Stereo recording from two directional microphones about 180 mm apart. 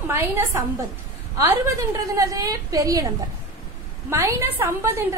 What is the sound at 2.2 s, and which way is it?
Speech, 20° right (ahead or behind).